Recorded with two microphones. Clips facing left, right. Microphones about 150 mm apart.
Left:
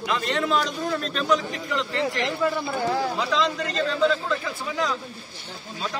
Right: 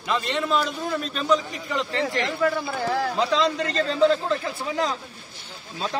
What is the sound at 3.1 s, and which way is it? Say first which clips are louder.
A man's voice: right 2 dB; 30° right (ahead or behind).